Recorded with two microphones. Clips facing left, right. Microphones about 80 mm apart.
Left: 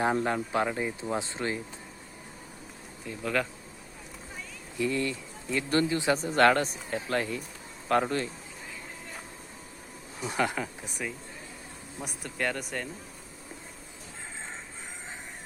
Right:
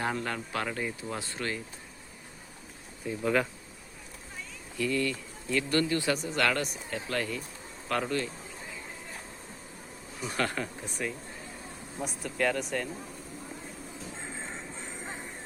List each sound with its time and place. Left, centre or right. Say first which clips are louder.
0.0 s speech: left 5 dB; centre
3.1 s speech: right 2 dB; centre
4.8 s speech: even; left
6.1 s speech: left 6 dB; left
10.2 s speech: left 2 dB; centre